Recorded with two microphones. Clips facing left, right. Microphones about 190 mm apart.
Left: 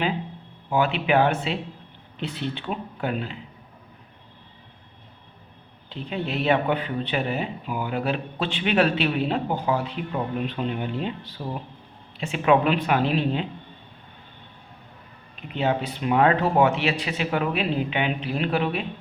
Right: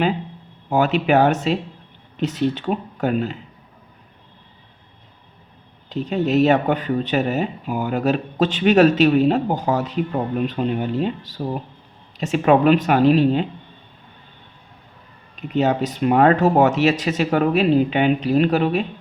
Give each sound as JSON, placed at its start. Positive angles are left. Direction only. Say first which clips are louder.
{"t": 0.7, "sound": "speech", "louder": "right 5 dB", "side_deg": -40}
{"t": 5.9, "sound": "speech", "louder": "right 10 dB", "side_deg": -40}
{"t": 15.4, "sound": "speech", "louder": "right 6 dB", "side_deg": -40}